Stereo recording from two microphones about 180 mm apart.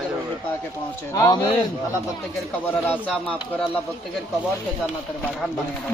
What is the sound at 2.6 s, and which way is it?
Speech, 10° left (ahead or behind).